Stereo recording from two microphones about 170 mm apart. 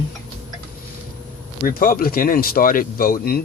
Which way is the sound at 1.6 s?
55° left (ahead or behind).